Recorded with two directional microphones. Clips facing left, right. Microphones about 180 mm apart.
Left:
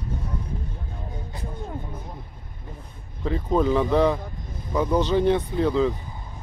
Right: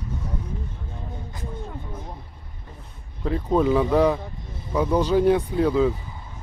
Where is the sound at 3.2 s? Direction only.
Centre (ahead or behind).